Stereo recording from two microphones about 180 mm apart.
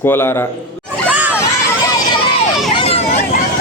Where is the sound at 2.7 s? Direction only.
35° left (ahead or behind).